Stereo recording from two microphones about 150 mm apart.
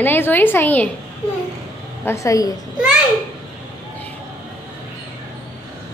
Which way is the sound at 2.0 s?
20° left (ahead or behind).